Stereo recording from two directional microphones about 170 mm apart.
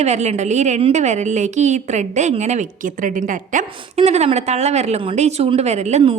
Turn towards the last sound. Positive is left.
turn(degrees=-35)  # may be behind; listen again after turning